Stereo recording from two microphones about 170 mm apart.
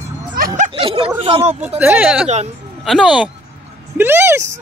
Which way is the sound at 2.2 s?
40° right (ahead or behind).